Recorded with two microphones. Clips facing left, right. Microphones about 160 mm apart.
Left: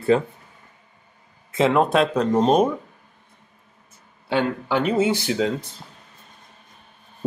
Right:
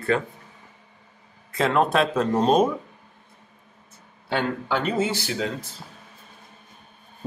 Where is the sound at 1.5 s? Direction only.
20° left (ahead or behind).